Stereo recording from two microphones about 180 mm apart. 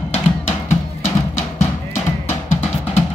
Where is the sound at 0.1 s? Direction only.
40° left (ahead or behind).